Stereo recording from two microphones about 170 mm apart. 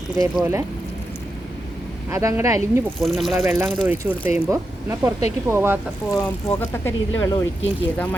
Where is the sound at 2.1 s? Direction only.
15° right (ahead or behind).